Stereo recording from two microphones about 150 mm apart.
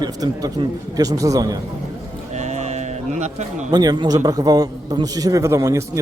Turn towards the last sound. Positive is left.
turn(degrees=-20)  # may be behind; listen again after turning